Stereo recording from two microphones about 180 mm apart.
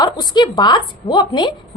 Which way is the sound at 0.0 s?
25° left (ahead or behind).